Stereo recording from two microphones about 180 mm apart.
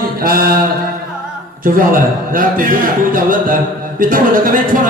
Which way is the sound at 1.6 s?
50° right (ahead or behind).